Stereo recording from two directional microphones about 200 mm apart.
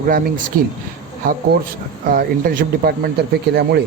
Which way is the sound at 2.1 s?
45° right (ahead or behind).